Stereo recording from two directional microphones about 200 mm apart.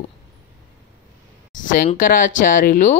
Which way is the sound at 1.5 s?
40° left (ahead or behind).